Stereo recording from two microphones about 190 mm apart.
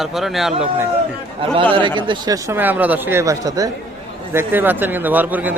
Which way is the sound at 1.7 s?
25° right (ahead or behind).